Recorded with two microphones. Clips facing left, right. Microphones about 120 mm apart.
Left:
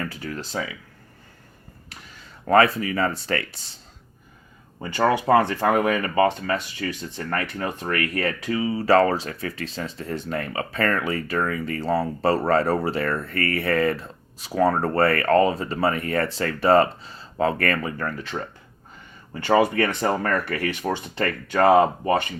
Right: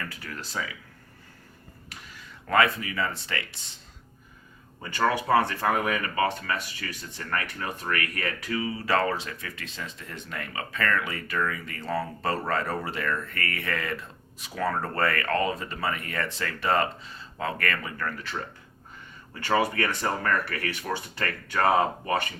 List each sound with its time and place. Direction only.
0.0 s speech: 30° left (ahead or behind)
2.5 s speech: 35° left (ahead or behind)
4.8 s speech: 30° left (ahead or behind)